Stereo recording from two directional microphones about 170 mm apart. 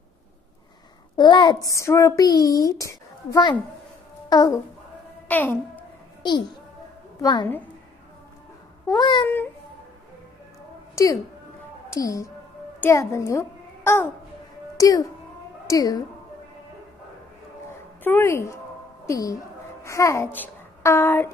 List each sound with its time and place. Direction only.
1.1 s a child's voice: 25° left (ahead or behind)
5.3 s a child's voice: 10° left (ahead or behind)
6.2 s a child's voice: 25° left (ahead or behind)
8.8 s a child's voice: 25° left (ahead or behind)
9.2 s a woman's voice: 10° left (ahead or behind)
11.0 s a woman's voice: 15° left (ahead or behind)
18.0 s a woman's voice: 15° left (ahead or behind)